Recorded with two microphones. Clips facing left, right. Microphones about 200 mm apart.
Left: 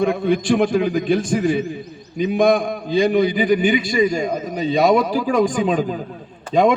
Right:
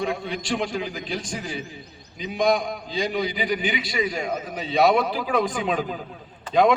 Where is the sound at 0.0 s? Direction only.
55° left (ahead or behind).